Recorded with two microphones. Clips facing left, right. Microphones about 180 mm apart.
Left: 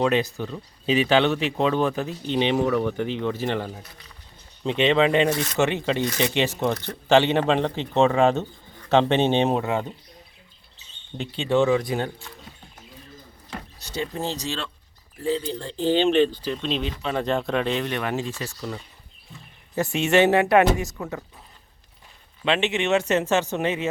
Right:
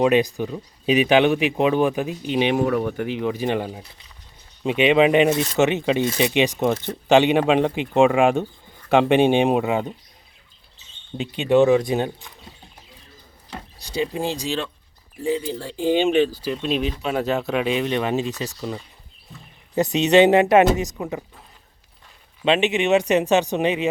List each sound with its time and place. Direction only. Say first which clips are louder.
0.0 s speech: right 4 dB; 15° right (ahead or behind)
11.2 s speech: right 4 dB; 15° right (ahead or behind)
13.7 s speech: right 5 dB; 15° right (ahead or behind)
22.4 s speech: right 4 dB; 20° right (ahead or behind)